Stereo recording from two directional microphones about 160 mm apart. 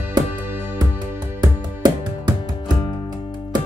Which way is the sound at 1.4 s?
25° right (ahead or behind).